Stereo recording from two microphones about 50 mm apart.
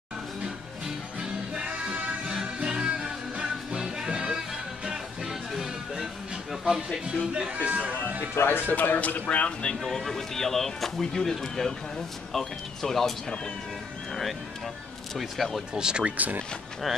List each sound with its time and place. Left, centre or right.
1.5 s music: right; by 6.0 s centre
6.6 s speech: centre
7.5 s speech: right
8.4 s speech: left; by 13.1 s centre
15.1 s speech: centre
15.7 s speech: centre